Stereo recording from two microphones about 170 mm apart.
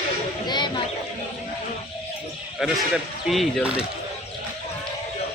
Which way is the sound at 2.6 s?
Centre (ahead or behind).